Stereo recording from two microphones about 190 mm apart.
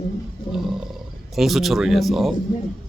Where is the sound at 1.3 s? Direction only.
Centre (ahead or behind).